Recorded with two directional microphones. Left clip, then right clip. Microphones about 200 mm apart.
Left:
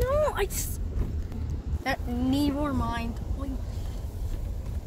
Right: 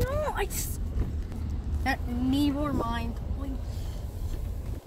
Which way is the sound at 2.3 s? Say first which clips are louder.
Even; 20° left (ahead or behind).